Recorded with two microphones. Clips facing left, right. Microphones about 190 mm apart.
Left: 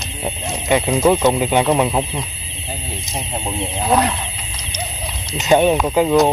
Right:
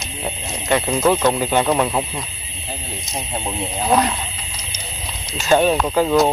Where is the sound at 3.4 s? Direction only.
Centre (ahead or behind).